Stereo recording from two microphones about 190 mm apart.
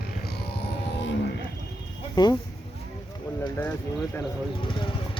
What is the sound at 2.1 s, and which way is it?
Speech, 20° left (ahead or behind).